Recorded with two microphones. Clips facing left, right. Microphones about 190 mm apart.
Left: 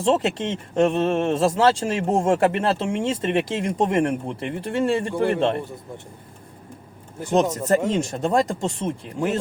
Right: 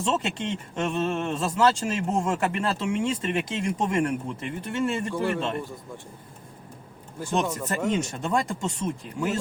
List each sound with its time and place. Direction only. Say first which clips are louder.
0.0 s speech: left 6 dB; 35° left (ahead or behind)
7.3 s speech: left 8 dB; 40° left (ahead or behind)